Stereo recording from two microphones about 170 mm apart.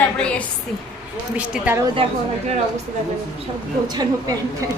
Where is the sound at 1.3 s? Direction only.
10° right (ahead or behind).